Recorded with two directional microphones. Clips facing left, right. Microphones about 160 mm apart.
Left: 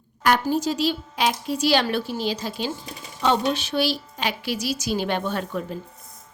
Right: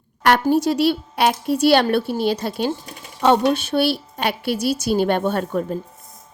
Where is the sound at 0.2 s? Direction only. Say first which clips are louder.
Right 5 dB; 60° right (ahead or behind).